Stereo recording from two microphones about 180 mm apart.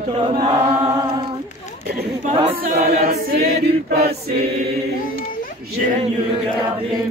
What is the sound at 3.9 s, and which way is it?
Choir, 60° right (ahead or behind).